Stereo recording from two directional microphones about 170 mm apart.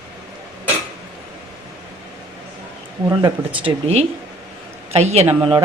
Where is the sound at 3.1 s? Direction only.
25° right (ahead or behind).